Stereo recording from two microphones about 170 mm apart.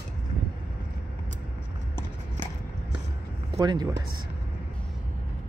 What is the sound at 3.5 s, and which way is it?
Speech, 25° right (ahead or behind).